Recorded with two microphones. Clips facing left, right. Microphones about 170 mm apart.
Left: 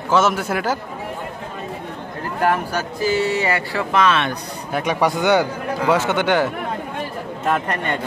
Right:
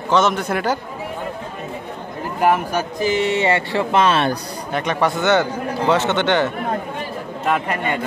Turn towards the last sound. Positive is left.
turn(degrees=0)  # may be behind; listen again after turning